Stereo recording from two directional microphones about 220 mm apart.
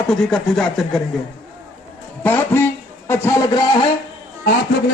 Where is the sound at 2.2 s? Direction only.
10° left (ahead or behind).